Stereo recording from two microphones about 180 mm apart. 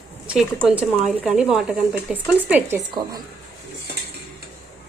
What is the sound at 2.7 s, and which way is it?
Speech, 20° right (ahead or behind).